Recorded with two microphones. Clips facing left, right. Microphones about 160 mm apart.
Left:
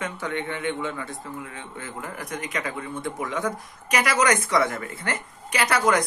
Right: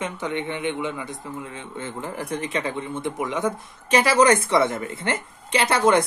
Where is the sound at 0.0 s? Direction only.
20° right (ahead or behind).